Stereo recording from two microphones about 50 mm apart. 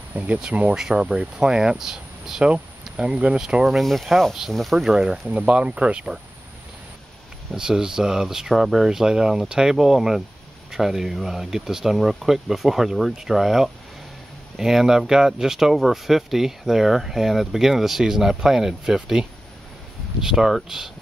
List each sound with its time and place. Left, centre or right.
0.1 s speech: right
0.7 s speech: centre
3.0 s speech: centre
3.7 s speech: centre
4.7 s speech: centre
5.3 s speech: right
7.5 s speech: centre